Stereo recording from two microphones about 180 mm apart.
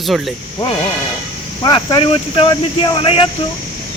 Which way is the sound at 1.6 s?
25° left (ahead or behind).